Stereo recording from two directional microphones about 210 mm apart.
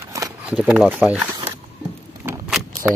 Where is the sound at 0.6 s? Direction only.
5° right (ahead or behind).